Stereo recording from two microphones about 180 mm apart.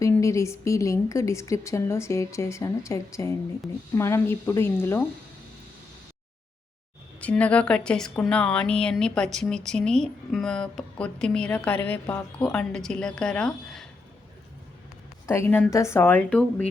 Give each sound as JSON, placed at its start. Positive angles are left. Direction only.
{"t": 0.0, "sound": "a woman's voice", "side_deg": 15}
{"t": 7.2, "sound": "a woman's voice", "side_deg": 5}
{"t": 15.3, "sound": "a woman's voice", "side_deg": 10}